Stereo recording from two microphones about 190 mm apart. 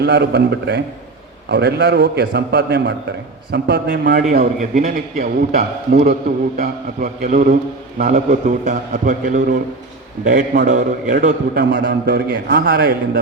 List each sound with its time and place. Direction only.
0.0 s a man's voice: 60° right (ahead or behind); by 11.6 s 45° right (ahead or behind)
11.7 s a man's voice: 70° right (ahead or behind); by 12.9 s 50° right (ahead or behind)